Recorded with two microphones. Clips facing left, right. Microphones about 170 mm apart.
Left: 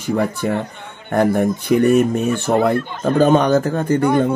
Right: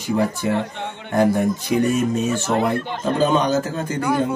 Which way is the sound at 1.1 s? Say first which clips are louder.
Left 2 dB; 55° left (ahead or behind).